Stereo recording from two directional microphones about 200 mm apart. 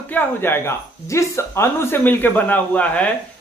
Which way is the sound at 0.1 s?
10° left (ahead or behind).